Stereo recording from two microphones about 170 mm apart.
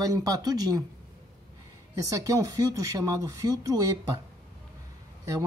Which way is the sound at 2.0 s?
20° right (ahead or behind).